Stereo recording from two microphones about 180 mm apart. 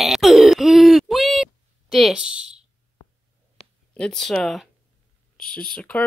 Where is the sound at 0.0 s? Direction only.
Centre (ahead or behind).